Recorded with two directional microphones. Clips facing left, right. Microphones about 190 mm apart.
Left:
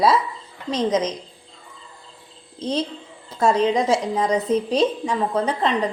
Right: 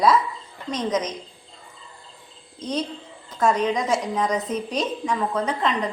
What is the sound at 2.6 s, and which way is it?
A woman's voice, 30° left (ahead or behind).